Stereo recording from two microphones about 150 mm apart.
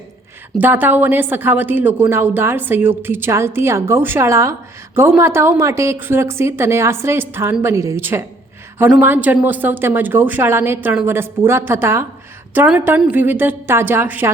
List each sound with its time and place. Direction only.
0.6 s speech: 10° right (ahead or behind)